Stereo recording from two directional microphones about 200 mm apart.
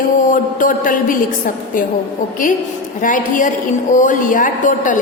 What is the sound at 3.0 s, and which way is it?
Speech, 40° left (ahead or behind).